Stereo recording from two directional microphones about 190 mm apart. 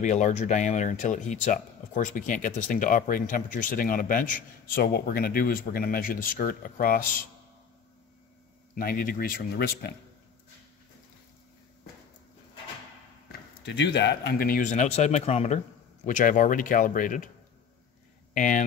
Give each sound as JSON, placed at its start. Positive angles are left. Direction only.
{"t": 0.0, "sound": "speech", "side_deg": 40}
{"t": 8.7, "sound": "speech", "side_deg": 45}
{"t": 13.7, "sound": "speech", "side_deg": 65}
{"t": 18.3, "sound": "speech", "side_deg": 45}